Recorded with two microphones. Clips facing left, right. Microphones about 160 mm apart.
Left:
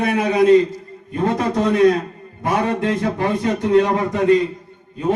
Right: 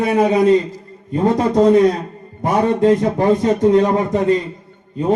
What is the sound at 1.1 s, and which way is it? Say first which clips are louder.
A man's voice: right 4 dB; 35° right (ahead or behind).